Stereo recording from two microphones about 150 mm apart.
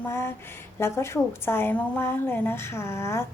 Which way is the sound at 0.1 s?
15° left (ahead or behind).